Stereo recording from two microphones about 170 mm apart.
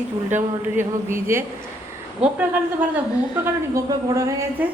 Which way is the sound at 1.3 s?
15° right (ahead or behind).